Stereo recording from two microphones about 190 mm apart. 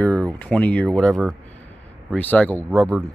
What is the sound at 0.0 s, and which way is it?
Speech, 5° left (ahead or behind).